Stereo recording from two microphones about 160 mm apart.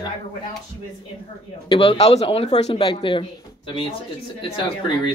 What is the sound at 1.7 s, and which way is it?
A man's voice, 35° left (ahead or behind).